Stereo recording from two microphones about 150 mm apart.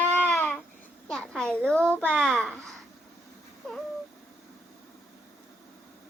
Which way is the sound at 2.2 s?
Centre (ahead or behind).